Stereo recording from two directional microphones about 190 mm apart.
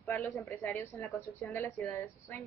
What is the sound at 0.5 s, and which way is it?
A woman's voice, 10° left (ahead or behind).